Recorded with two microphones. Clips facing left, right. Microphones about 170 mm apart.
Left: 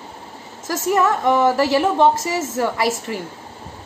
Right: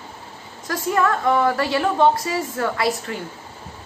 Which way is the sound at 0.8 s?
20° left (ahead or behind).